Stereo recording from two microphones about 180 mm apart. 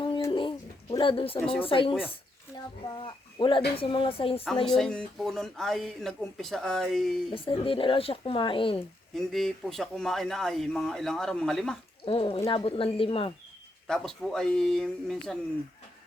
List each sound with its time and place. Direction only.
0.0 s bird: 25° left (ahead or behind)
1.6 s speech: 30° left (ahead or behind)
4.6 s speech: centre (ahead or behind)
7.3 s speech: 30° left (ahead or behind)
9.1 s speech: centre (ahead or behind)
12.0 s speech: 30° left (ahead or behind)
13.8 s speech: centre (ahead or behind)